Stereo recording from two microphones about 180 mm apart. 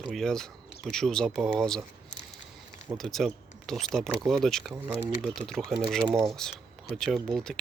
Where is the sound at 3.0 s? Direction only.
Centre (ahead or behind).